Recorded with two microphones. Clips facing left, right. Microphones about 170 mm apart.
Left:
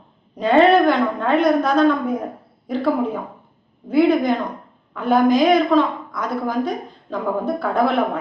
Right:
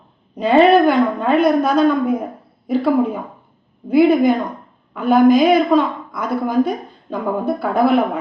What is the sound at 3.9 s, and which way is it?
A woman's voice, 5° right (ahead or behind).